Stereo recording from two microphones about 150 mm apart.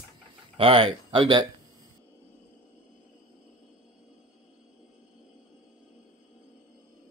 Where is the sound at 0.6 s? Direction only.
35° right (ahead or behind).